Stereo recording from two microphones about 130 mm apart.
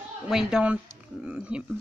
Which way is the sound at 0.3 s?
5° right (ahead or behind).